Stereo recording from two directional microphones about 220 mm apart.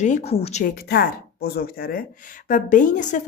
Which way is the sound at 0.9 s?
45° left (ahead or behind).